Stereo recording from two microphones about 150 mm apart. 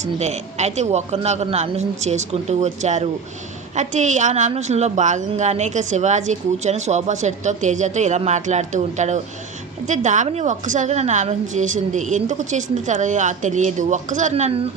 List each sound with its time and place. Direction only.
0.0 s a woman's voice: 50° right (ahead or behind)